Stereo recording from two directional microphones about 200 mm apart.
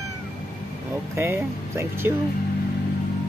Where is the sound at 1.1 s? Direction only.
15° right (ahead or behind).